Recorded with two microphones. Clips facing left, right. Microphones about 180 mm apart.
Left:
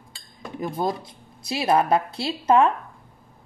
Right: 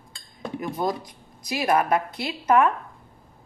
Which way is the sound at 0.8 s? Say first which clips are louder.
Left 1 dB; 25° left (ahead or behind).